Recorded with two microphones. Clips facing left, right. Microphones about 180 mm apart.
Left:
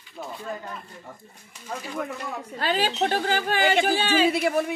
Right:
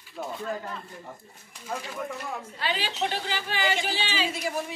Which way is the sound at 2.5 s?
45° left (ahead or behind).